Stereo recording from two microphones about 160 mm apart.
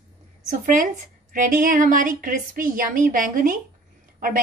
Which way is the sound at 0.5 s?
55° right (ahead or behind).